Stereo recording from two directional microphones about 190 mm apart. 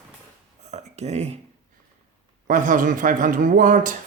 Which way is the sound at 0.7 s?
35° right (ahead or behind).